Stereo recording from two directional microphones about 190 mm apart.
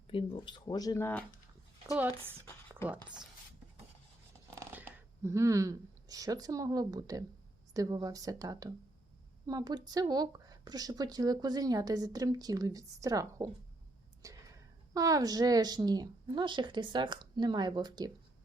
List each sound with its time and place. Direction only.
0.1 s speech: 30° left (ahead or behind); by 1.2 s 10° left (ahead or behind)
4.5 s speech: 10° right (ahead or behind)
14.2 s a sound: 15° right (ahead or behind)
14.9 s speech: 20° right (ahead or behind)